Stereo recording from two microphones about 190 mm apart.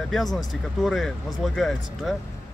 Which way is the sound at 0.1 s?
Centre (ahead or behind).